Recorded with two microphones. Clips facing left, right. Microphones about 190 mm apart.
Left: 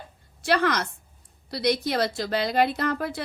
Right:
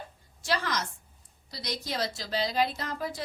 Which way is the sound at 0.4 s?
60° left (ahead or behind).